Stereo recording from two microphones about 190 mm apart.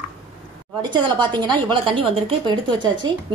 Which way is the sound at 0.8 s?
25° right (ahead or behind).